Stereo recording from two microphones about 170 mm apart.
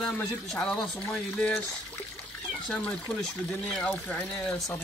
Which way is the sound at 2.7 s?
5° left (ahead or behind).